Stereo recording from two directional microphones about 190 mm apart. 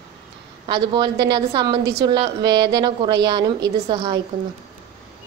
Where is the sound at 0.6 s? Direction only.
25° right (ahead or behind).